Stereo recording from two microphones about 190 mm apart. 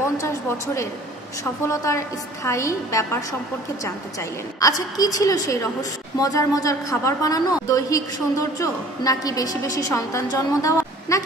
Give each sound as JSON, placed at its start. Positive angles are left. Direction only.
{"t": 1.4, "sound": "a woman's voice", "side_deg": 15}